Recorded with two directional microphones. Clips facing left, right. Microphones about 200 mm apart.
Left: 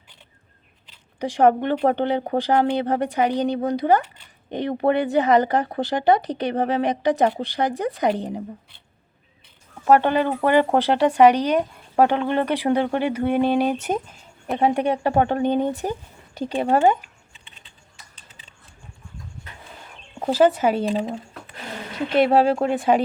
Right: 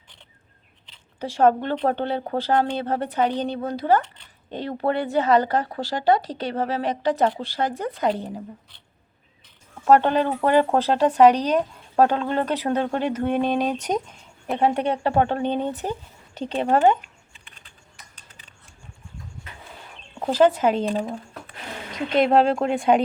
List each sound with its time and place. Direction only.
0.9 s speech: 15° left (ahead or behind)
9.8 s speech: 10° left (ahead or behind)
20.1 s speech: 10° left (ahead or behind)